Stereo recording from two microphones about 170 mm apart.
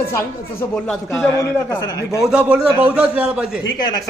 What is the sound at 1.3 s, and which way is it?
Speech, 20° left (ahead or behind).